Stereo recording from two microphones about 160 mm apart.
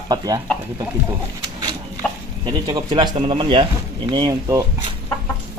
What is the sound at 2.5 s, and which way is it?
Speech, 25° right (ahead or behind).